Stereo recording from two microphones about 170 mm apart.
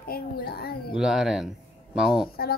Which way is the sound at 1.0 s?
Centre (ahead or behind).